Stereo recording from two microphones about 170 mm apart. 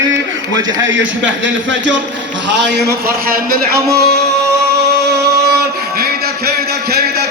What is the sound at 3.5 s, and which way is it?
Speech, 60° right (ahead or behind).